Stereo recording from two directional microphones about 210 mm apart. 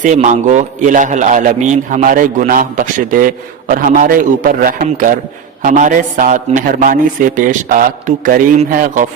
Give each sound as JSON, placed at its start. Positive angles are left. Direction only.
{"t": 0.0, "sound": "a man's voice", "side_deg": -35}